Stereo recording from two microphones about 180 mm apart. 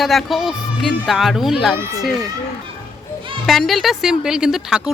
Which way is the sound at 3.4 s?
Centre (ahead or behind).